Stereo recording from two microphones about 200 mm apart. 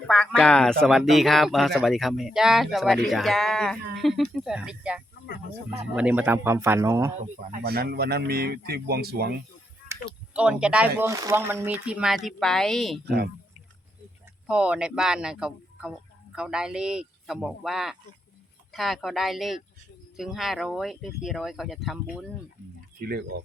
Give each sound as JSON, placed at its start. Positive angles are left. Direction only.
{"t": 0.1, "sound": "a man's voice", "side_deg": 0}
{"t": 7.6, "sound": "speech", "side_deg": -50}
{"t": 10.1, "sound": "a man's voice", "side_deg": -5}
{"t": 14.4, "sound": "speech", "side_deg": -5}
{"t": 23.0, "sound": "speech", "side_deg": -50}